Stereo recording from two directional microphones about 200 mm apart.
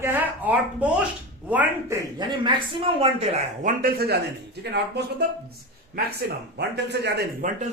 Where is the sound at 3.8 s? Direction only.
50° right (ahead or behind).